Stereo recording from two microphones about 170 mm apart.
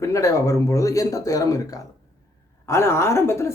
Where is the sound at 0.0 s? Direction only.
20° left (ahead or behind).